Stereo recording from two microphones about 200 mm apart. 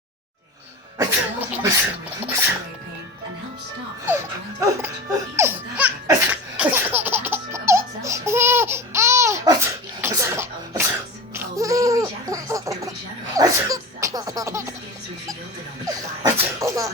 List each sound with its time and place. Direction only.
0.9 s sneeze: 10° right (ahead or behind)
4.6 s music: 15° right (ahead or behind)
6.1 s laughter: 10° right (ahead or behind)
13.3 s baby laughter: 15° right (ahead or behind)
15.9 s sneeze: 15° right (ahead or behind)